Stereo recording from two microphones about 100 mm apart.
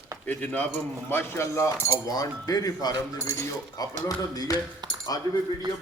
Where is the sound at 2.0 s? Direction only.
40° left (ahead or behind).